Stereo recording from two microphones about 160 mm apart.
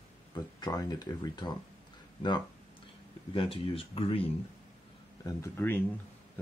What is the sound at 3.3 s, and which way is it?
Speech, 35° left (ahead or behind).